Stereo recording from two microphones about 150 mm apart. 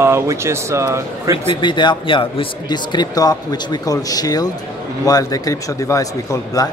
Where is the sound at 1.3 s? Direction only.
35° left (ahead or behind).